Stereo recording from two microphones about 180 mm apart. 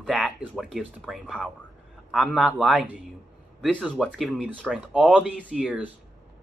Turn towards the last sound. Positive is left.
turn(degrees=-5)  # may be behind; listen again after turning